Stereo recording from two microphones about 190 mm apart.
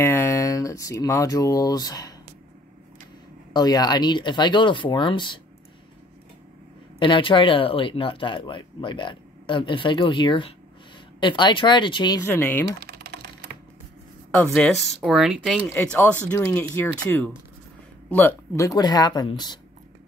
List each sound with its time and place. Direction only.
0.0 s speech: 10° left (ahead or behind)
3.5 s speech: 20° left (ahead or behind)
7.0 s speech: 25° left (ahead or behind)
12.2 s speech: 10° left (ahead or behind)
12.8 s typing: 55° right (ahead or behind)
14.3 s speech: 5° left (ahead or behind); by 19.6 s 25° left (ahead or behind)